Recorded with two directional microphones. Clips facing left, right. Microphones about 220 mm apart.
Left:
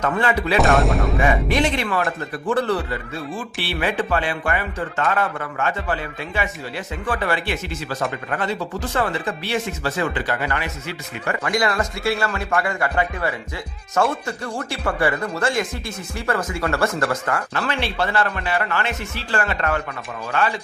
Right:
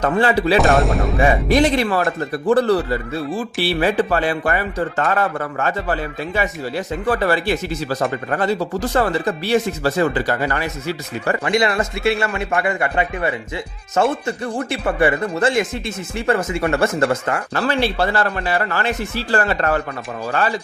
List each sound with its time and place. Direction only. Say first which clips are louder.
0.0 s a man's voice: right 4 dB; 35° right (ahead or behind)
0.6 s speech: right 2 dB; centre (ahead or behind)
1.2 s a man's voice: right 6 dB; 35° right (ahead or behind)
11.4 s speech: right 2 dB; 25° right (ahead or behind)
17.5 s a man's voice: right 5 dB; 35° right (ahead or behind)